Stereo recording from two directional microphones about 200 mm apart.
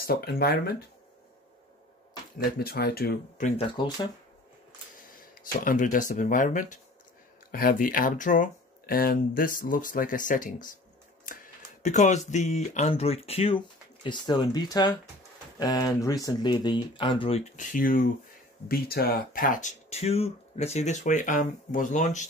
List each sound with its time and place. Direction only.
0.0 s speech: 50° left (ahead or behind)
2.6 s speech: 50° left (ahead or behind)
3.4 s speech: 25° left (ahead or behind)
5.4 s speech: 45° left (ahead or behind)